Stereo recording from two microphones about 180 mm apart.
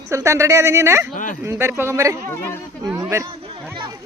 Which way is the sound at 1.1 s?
45° left (ahead or behind).